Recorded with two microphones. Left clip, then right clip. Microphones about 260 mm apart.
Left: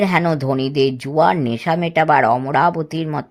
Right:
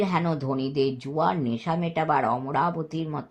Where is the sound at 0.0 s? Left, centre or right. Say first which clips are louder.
Left 9 dB; left.